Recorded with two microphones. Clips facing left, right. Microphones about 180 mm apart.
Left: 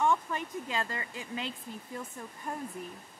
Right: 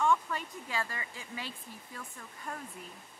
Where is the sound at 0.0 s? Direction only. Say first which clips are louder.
Left 1 dB; 20° left (ahead or behind).